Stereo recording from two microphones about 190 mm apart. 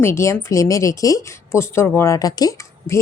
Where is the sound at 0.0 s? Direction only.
15° left (ahead or behind).